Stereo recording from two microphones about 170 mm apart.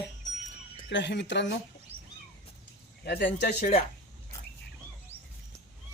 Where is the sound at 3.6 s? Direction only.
45° left (ahead or behind).